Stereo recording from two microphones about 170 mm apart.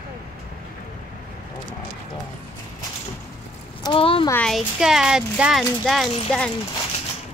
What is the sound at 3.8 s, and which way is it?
Speech, 30° left (ahead or behind).